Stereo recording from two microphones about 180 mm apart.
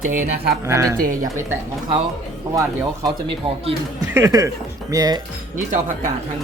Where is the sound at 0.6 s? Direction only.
15° right (ahead or behind).